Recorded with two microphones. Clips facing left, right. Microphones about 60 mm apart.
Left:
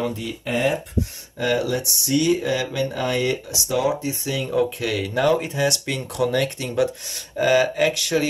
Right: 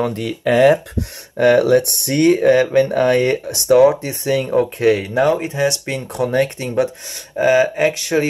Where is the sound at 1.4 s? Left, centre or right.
Right.